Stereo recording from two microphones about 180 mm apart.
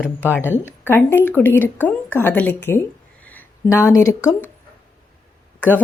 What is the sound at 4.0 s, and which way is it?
Speech, 15° left (ahead or behind).